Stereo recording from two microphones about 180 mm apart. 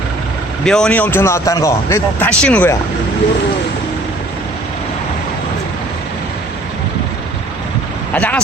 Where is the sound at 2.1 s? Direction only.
5° left (ahead or behind).